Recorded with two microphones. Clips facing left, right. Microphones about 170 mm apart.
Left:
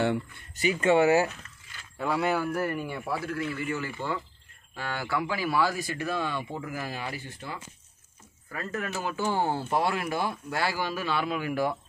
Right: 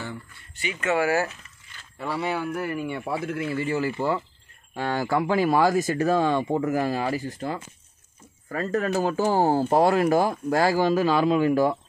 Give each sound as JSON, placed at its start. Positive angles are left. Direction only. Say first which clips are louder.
{"t": 0.0, "sound": "a sound", "louder": "left 9 dB", "side_deg": 70}
{"t": 0.6, "sound": "speech", "louder": "left 3 dB", "side_deg": 35}
{"t": 2.0, "sound": "speech", "louder": "left 1 dB", "side_deg": 0}
{"t": 3.1, "sound": "speech", "louder": "right 2 dB", "side_deg": -20}